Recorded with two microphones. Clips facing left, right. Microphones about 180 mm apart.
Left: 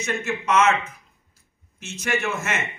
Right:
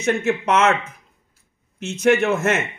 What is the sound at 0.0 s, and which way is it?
Speech, 60° right (ahead or behind).